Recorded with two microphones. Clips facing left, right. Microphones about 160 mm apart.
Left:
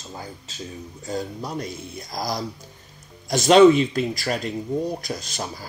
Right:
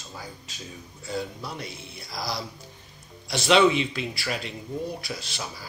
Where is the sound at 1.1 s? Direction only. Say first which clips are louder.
Left 3 dB; 40° left (ahead or behind).